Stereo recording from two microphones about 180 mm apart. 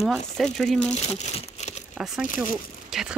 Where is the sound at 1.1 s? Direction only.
40° left (ahead or behind).